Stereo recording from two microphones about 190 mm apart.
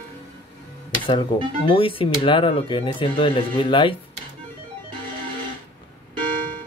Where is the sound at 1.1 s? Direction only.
25° left (ahead or behind).